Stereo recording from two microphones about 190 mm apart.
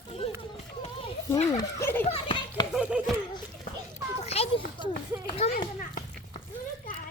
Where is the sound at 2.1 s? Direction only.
30° left (ahead or behind).